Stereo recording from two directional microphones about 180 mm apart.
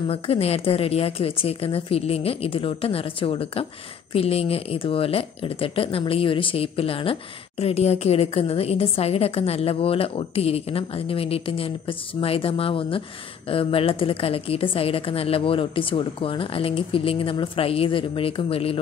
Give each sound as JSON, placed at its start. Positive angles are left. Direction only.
{"t": 0.1, "sound": "speech", "side_deg": 35}